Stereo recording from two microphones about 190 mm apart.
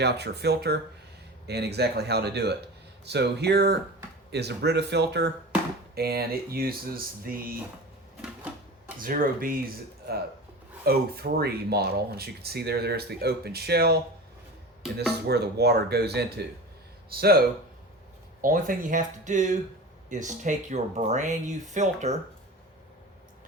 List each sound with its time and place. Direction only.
0.0 s speech: 60° right (ahead or behind)
9.0 s speech: 50° right (ahead or behind)
14.9 s speech: 60° right (ahead or behind)
18.4 s speech: 45° right (ahead or behind)